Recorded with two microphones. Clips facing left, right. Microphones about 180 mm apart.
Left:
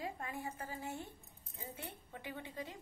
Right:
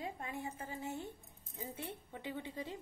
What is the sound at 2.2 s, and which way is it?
Speech, 25° right (ahead or behind).